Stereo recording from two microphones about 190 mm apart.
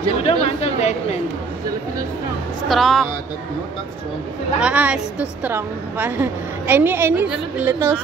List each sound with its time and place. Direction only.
0.2 s speech: 35° left (ahead or behind)
2.7 s speech: centre (ahead or behind)
4.6 s a woman's voice: 5° right (ahead or behind)